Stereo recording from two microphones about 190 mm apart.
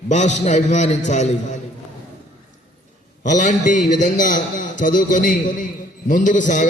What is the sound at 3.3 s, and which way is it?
A man's voice, 40° left (ahead or behind).